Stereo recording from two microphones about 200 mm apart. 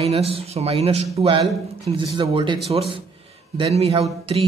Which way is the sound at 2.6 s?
30° right (ahead or behind).